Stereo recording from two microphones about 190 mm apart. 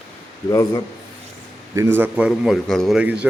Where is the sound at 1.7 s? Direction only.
15° right (ahead or behind).